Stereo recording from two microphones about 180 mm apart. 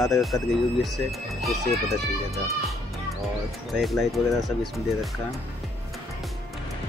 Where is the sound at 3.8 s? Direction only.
Centre (ahead or behind).